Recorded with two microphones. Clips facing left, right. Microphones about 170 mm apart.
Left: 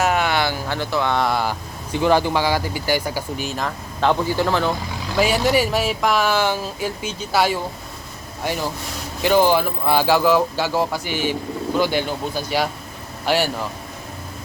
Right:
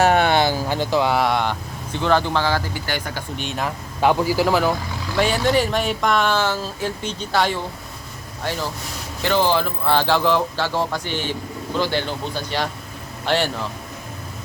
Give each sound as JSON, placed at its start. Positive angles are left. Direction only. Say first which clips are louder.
{"t": 0.0, "sound": "a sound", "louder": "right 3 dB", "side_deg": -35}
{"t": 0.7, "sound": "speech", "louder": "right 2 dB", "side_deg": -15}
{"t": 4.0, "sound": "a man's voice", "louder": "right 1 dB", "side_deg": -10}
{"t": 5.4, "sound": "speech", "louder": "left 1 dB", "side_deg": 10}